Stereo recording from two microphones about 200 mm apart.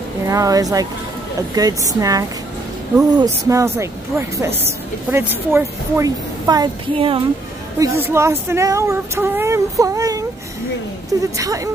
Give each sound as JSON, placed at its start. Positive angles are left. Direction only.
{"t": 0.3, "sound": "speech", "side_deg": -15}
{"t": 7.8, "sound": "speech", "side_deg": -15}